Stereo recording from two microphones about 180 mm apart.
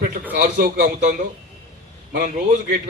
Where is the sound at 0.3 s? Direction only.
45° right (ahead or behind).